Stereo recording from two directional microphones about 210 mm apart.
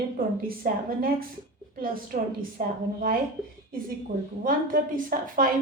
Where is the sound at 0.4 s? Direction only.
45° right (ahead or behind).